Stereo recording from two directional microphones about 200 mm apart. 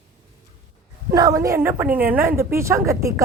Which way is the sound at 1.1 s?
15° right (ahead or behind).